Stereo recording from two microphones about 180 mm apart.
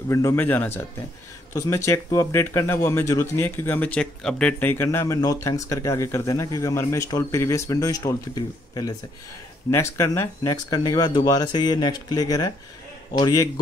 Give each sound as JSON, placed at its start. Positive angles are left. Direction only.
{"t": 0.1, "sound": "speech", "side_deg": 15}